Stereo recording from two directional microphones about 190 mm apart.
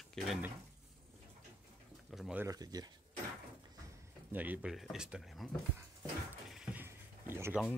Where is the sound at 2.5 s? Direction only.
20° right (ahead or behind).